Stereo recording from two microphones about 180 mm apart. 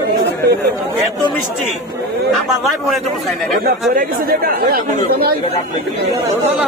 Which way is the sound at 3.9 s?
60° right (ahead or behind).